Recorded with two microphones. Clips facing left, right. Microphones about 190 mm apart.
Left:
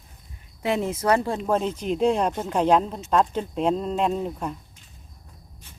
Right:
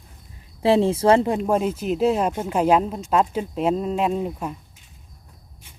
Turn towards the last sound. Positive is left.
turn(degrees=-5)  # may be behind; listen again after turning